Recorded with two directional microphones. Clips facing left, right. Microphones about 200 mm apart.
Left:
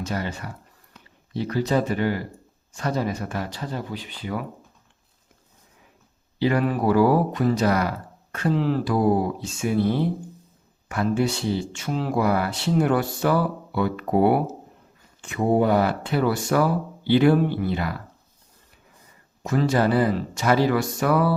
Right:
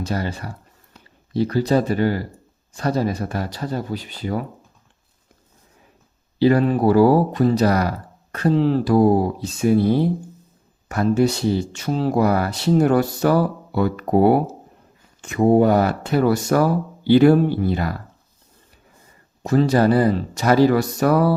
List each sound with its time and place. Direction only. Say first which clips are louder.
0.0 s speech: right 3 dB; 35° right (ahead or behind)
6.4 s speech: right 6 dB; 30° right (ahead or behind)
19.4 s speech: right 5 dB; 35° right (ahead or behind)